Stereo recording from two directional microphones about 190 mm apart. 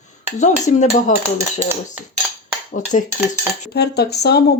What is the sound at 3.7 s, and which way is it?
Speech, 60° left (ahead or behind).